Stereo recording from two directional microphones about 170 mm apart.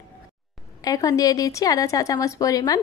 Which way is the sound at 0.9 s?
20° left (ahead or behind).